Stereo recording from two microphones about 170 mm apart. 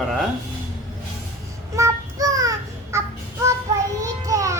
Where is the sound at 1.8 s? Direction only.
20° right (ahead or behind).